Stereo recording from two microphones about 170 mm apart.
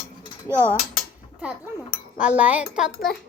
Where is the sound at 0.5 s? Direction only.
15° right (ahead or behind).